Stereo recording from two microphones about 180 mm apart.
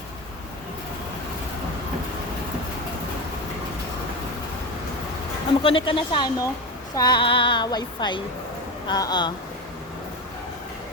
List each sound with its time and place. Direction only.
5.6 s female singing: 30° left (ahead or behind)